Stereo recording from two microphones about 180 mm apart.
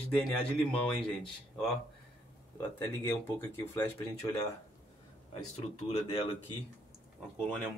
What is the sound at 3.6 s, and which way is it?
Speech, 15° left (ahead or behind).